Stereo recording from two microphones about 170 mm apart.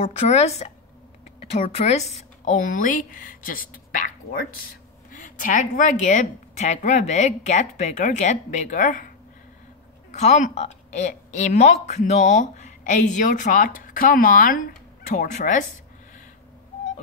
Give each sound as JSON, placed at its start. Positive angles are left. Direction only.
{"t": 0.0, "sound": "speech", "side_deg": 40}
{"t": 1.8, "sound": "a woman's voice", "side_deg": 40}
{"t": 5.2, "sound": "a woman's voice", "side_deg": 50}
{"t": 10.1, "sound": "a woman's voice", "side_deg": 40}